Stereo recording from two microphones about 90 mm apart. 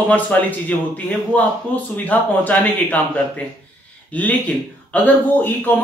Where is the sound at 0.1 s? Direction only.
20° left (ahead or behind).